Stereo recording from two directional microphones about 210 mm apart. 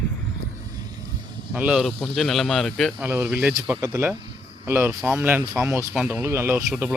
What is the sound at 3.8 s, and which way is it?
Speech, 15° right (ahead or behind).